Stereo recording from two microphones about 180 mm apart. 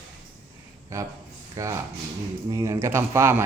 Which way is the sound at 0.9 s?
15° right (ahead or behind).